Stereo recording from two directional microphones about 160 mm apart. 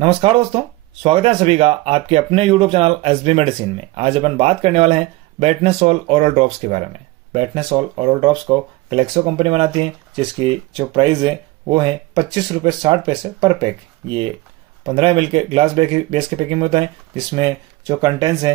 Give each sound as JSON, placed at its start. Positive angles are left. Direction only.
{"t": 0.0, "sound": "speech", "side_deg": -35}